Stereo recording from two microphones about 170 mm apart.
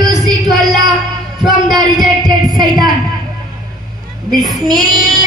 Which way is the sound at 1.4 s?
25° right (ahead or behind).